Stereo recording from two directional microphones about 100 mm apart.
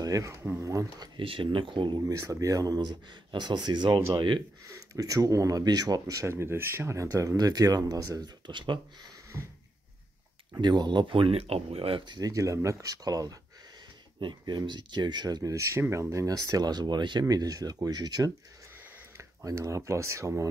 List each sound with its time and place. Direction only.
0.0 s speech: 35° right (ahead or behind)
1.2 s speech: 60° right (ahead or behind)
2.0 s speech: 35° right (ahead or behind)
4.6 s speech: 35° right (ahead or behind)
10.6 s speech: 50° right (ahead or behind); by 12.0 s 70° right (ahead or behind)
12.0 s speech: 45° right (ahead or behind); by 20.4 s 30° right (ahead or behind)